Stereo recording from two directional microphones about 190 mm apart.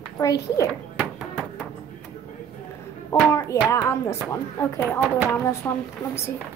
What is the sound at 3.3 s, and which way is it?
Hands, 15° left (ahead or behind).